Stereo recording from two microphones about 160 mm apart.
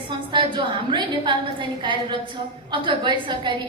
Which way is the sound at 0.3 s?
30° right (ahead or behind).